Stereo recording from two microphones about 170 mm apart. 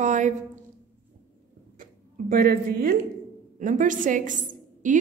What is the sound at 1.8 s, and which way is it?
Speech, 50° right (ahead or behind).